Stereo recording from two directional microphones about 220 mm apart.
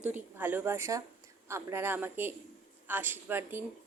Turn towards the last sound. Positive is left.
turn(degrees=-10)  # may be behind; listen again after turning